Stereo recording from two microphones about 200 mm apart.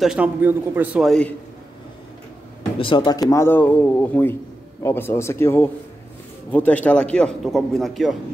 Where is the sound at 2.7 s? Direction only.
25° left (ahead or behind).